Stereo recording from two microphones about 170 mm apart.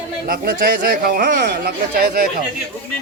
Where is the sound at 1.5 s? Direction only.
65° right (ahead or behind).